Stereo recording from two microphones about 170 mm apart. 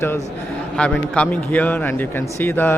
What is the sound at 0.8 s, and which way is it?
Speech, 10° left (ahead or behind).